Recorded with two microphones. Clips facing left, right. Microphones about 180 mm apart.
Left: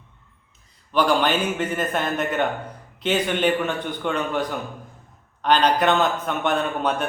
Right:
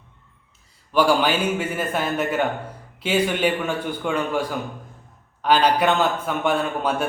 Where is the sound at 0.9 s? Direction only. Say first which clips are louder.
Right 1 dB; 10° right (ahead or behind).